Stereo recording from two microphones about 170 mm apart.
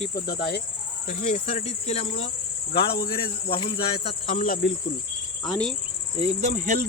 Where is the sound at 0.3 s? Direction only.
75° left (ahead or behind).